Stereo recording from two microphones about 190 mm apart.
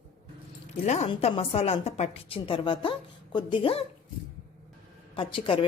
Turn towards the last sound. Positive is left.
turn(degrees=25)  # may be behind; listen again after turning